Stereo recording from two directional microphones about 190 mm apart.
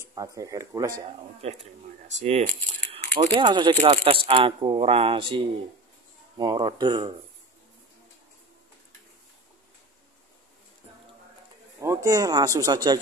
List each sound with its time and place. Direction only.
0.0 s speech: 20° right (ahead or behind)
1.4 s speech: 35° right (ahead or behind)
3.3 s speech: 25° right (ahead or behind)
11.8 s speech: 15° right (ahead or behind)